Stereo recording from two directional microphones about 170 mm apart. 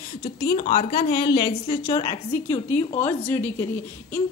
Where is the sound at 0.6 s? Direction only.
50° left (ahead or behind).